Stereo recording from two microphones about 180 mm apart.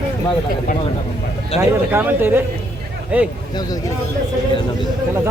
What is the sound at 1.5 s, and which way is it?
Speech, 35° left (ahead or behind).